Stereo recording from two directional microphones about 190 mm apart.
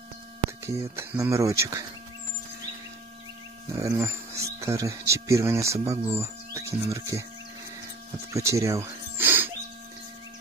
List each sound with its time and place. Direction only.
0.8 s speech: 15° right (ahead or behind)
3.7 s speech: 15° right (ahead or behind)
8.3 s music: 15° right (ahead or behind)